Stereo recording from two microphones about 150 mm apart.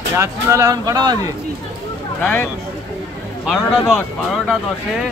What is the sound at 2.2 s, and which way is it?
Speech, 10° left (ahead or behind).